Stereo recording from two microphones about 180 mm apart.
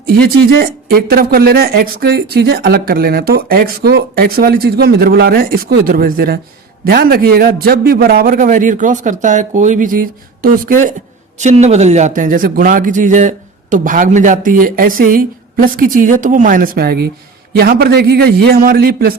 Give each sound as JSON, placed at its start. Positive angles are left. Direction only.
{"t": 0.1, "sound": "a man's voice", "side_deg": -55}
{"t": 11.3, "sound": "a man's voice", "side_deg": -40}